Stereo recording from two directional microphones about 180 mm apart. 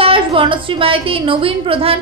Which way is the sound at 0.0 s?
30° right (ahead or behind).